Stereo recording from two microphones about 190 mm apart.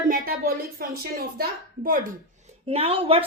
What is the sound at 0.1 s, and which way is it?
A woman's voice, 50° right (ahead or behind).